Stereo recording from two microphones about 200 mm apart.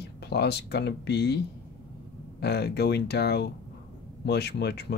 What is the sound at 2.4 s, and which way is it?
Speech, 55° left (ahead or behind).